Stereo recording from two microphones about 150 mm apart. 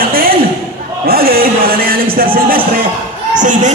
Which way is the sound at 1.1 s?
90° right.